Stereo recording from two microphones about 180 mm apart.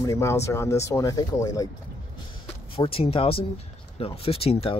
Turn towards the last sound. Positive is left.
turn(degrees=35)  # may be behind; listen again after turning